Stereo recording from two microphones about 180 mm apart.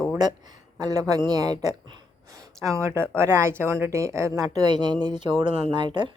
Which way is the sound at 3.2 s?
15° right (ahead or behind).